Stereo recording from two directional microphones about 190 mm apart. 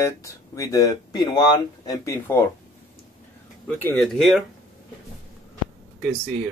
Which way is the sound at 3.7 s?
10° left (ahead or behind).